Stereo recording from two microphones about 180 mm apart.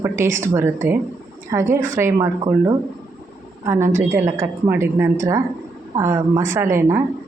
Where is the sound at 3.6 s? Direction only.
15° right (ahead or behind).